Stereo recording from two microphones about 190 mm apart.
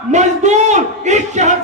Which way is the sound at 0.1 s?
40° right (ahead or behind).